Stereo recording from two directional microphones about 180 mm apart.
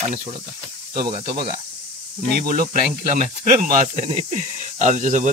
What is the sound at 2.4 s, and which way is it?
Speech, 55° right (ahead or behind).